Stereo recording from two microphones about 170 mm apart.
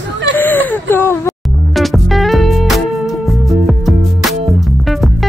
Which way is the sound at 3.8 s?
Centre (ahead or behind).